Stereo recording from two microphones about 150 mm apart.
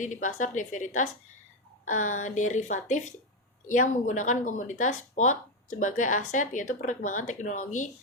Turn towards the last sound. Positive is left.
turn(degrees=55)  # may be behind; listen again after turning